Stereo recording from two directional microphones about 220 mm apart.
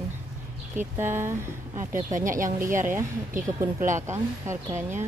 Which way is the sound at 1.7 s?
35° right (ahead or behind).